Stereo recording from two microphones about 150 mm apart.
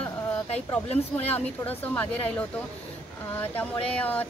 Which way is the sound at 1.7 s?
10° left (ahead or behind).